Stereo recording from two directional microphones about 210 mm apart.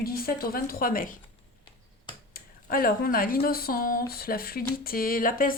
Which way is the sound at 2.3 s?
45° left (ahead or behind).